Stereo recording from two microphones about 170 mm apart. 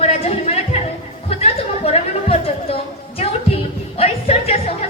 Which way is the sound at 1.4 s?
35° left (ahead or behind).